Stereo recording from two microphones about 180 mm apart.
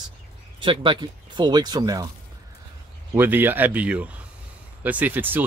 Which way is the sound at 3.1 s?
10° right (ahead or behind).